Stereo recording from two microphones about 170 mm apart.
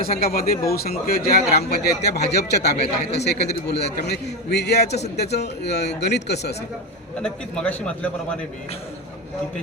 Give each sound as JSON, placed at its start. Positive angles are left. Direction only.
{"t": 0.3, "sound": "a man's voice", "side_deg": 60}
{"t": 7.2, "sound": "a man's voice", "side_deg": 5}